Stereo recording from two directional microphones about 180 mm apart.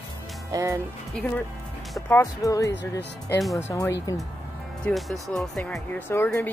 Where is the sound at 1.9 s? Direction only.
15° left (ahead or behind).